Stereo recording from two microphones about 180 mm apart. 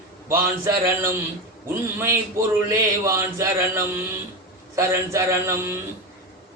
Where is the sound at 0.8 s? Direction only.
15° right (ahead or behind).